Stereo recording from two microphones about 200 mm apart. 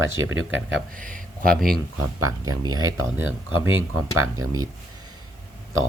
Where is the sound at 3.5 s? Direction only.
85° right.